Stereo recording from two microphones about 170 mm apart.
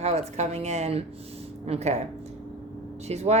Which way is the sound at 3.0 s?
40° right (ahead or behind).